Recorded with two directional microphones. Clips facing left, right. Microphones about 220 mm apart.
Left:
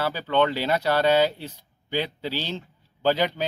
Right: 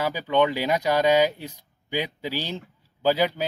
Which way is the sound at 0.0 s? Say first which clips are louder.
Right 1 dB; 10° right (ahead or behind).